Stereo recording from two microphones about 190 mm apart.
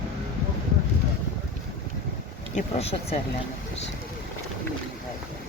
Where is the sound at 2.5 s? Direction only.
30° left (ahead or behind).